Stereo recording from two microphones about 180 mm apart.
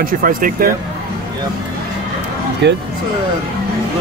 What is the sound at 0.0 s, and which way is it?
Speech, 50° right (ahead or behind).